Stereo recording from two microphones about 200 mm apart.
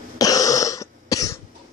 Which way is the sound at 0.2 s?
20° left (ahead or behind).